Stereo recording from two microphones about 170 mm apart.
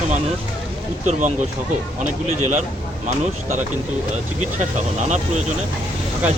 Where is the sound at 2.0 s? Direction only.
45° right (ahead or behind).